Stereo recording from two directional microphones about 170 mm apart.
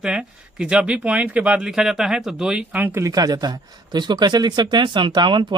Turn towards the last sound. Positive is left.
turn(degrees=-25)  # may be behind; listen again after turning